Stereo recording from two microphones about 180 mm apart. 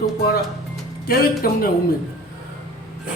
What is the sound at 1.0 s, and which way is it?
Speech, 55° left (ahead or behind).